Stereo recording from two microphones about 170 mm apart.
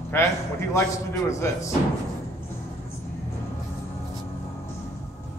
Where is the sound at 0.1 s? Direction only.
15° left (ahead or behind).